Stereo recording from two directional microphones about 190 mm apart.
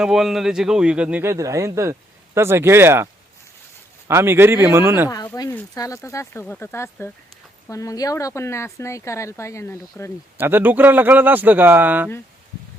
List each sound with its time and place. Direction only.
0.0 s speech: centre (ahead or behind)
4.1 s speech: 10° right (ahead or behind)
5.0 s speech: 20° left (ahead or behind)
10.3 s speech: 10° right (ahead or behind)